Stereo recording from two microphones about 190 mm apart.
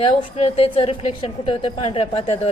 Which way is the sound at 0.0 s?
30° left (ahead or behind).